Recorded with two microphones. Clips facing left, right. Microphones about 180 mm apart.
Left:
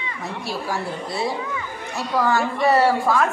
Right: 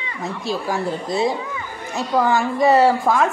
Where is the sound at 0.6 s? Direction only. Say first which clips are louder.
Right 4 dB; 20° right (ahead or behind).